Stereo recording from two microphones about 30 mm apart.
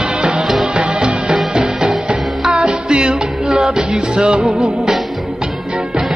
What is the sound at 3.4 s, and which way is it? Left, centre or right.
Music, centre.